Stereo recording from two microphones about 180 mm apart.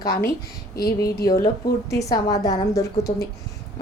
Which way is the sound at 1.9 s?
20° left (ahead or behind).